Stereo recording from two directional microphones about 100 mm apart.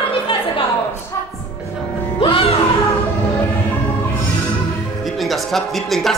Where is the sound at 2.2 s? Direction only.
65° left (ahead or behind).